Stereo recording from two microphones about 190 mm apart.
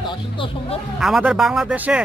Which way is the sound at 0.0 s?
25° left (ahead or behind).